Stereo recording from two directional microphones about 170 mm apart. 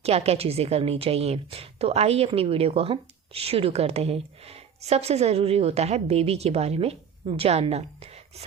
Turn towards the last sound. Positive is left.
turn(degrees=-40)  # may be behind; listen again after turning